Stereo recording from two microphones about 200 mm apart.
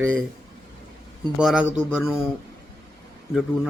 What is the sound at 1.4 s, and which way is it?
Speech, 5° right (ahead or behind).